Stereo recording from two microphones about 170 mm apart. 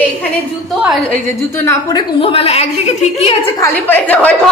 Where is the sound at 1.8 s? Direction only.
30° left (ahead or behind).